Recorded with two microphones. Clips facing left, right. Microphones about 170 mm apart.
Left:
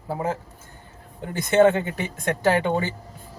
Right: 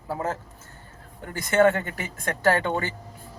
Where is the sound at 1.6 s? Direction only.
20° left (ahead or behind).